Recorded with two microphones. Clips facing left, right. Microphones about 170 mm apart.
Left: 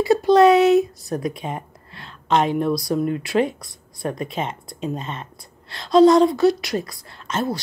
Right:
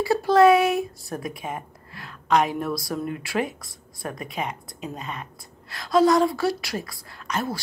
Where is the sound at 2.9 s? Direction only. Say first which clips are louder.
Left 7 dB; 25° left (ahead or behind).